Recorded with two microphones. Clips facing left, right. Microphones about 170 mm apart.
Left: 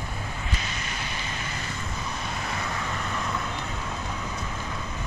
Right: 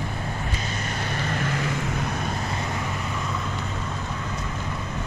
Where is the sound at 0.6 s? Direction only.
50° right (ahead or behind); by 2.1 s 70° right (ahead or behind).